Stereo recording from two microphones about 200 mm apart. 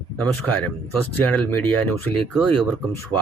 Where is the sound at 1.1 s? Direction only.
10° left (ahead or behind).